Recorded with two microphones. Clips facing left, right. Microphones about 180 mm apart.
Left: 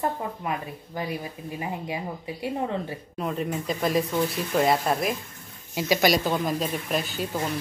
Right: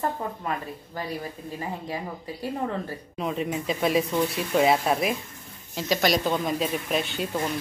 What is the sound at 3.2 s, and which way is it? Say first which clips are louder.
Speech: right 1 dB; centre (ahead or behind).